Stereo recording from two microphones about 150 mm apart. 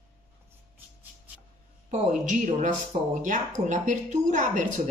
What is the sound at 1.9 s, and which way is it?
Speech, 55° right (ahead or behind).